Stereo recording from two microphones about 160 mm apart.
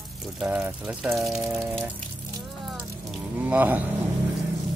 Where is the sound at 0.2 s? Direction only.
5° right (ahead or behind).